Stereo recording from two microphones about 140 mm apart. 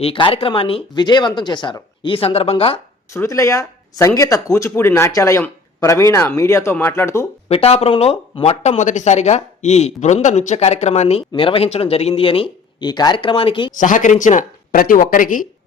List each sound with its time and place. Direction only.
0.0 s speech: 40° left (ahead or behind)
3.1 s speech: 20° left (ahead or behind)
7.4 s speech: 45° left (ahead or behind)
8.8 s speech: 60° left (ahead or behind)
11.3 s speech: 40° left (ahead or behind)
13.7 s speech: 65° left (ahead or behind)